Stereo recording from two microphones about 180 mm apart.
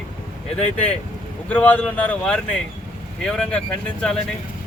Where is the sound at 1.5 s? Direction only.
10° left (ahead or behind).